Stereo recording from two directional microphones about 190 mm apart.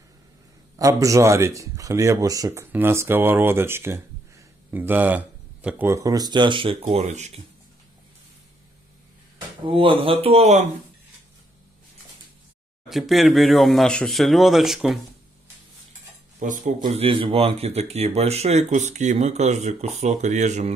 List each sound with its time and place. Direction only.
0.7 s speech: 15° right (ahead or behind); by 7.4 s 35° right (ahead or behind)
9.7 s speech: 30° right (ahead or behind)
12.8 s speech: centre (ahead or behind)
16.3 s speech: 40° right (ahead or behind)